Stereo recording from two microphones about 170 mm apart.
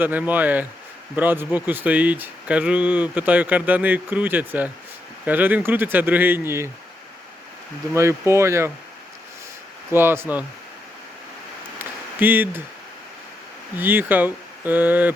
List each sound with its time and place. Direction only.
0.0 s speech: 10° right (ahead or behind)
7.9 s speech: 15° right (ahead or behind)
9.9 s speech: 15° right (ahead or behind)
11.8 s a sound: 10° right (ahead or behind)
13.7 s speech: 10° right (ahead or behind)